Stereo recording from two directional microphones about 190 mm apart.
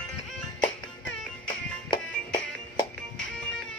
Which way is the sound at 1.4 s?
25° left (ahead or behind).